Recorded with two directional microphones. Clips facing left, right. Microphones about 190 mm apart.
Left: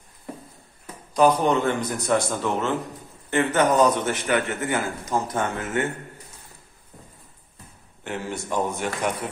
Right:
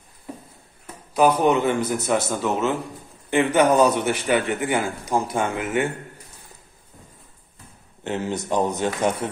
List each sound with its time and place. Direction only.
1.1 s a man's voice: 5° right (ahead or behind)
8.0 s a man's voice: 20° right (ahead or behind)